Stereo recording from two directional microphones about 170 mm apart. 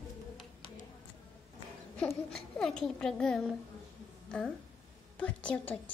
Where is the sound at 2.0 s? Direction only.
5° left (ahead or behind).